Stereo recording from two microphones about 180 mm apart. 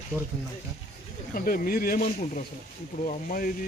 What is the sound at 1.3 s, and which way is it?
Speech, 55° left (ahead or behind).